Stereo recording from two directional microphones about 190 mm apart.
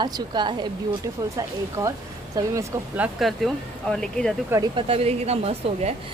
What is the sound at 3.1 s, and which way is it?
Speech, centre (ahead or behind).